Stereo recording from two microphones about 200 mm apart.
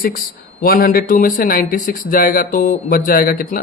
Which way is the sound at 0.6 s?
45° left (ahead or behind).